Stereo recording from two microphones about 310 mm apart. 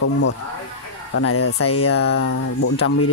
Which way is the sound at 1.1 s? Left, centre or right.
Left.